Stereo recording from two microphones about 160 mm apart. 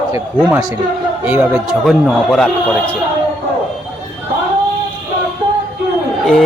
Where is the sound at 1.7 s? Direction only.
Centre (ahead or behind).